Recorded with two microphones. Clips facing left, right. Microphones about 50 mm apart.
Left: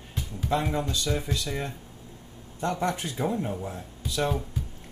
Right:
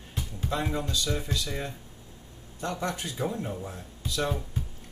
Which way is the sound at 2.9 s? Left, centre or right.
Left.